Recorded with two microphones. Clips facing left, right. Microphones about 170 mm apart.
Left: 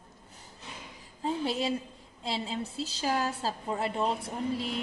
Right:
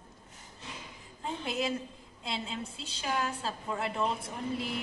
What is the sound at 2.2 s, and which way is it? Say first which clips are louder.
A woman's voice: left 4 dB; 35° left (ahead or behind).